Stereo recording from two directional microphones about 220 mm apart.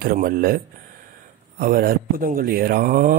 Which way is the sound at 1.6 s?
40° right (ahead or behind).